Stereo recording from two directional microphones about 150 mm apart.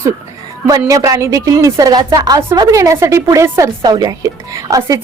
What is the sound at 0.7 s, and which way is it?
Speech, 20° right (ahead or behind).